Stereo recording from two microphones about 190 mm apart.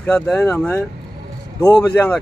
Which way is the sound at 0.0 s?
10° left (ahead or behind).